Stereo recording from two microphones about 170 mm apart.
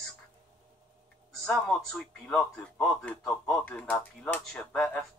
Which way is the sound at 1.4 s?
5° left (ahead or behind).